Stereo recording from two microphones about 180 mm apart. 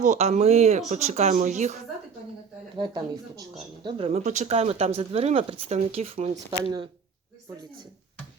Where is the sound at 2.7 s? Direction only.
25° right (ahead or behind).